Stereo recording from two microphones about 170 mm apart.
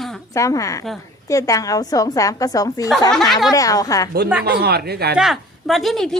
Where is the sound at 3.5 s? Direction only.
20° left (ahead or behind).